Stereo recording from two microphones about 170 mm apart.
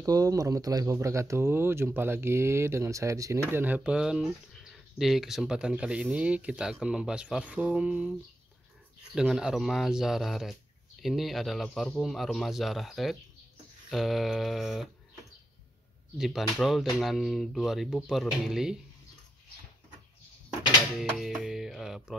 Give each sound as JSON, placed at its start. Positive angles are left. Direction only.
{"t": 0.0, "sound": "speech", "side_deg": -20}
{"t": 9.1, "sound": "speech", "side_deg": -5}
{"t": 16.2, "sound": "speech", "side_deg": 0}
{"t": 21.0, "sound": "speech", "side_deg": 0}